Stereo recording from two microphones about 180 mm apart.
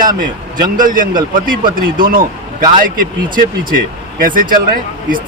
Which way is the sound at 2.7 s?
50° right (ahead or behind).